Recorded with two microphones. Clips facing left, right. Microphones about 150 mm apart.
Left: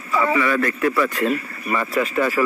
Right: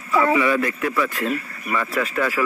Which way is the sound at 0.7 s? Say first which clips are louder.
Left 3 dB; centre (ahead or behind).